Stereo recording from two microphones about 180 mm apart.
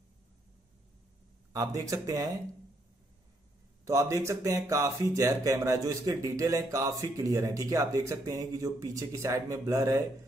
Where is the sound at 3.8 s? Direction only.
20° right (ahead or behind).